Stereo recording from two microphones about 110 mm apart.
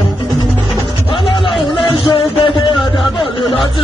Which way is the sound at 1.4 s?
55° left (ahead or behind).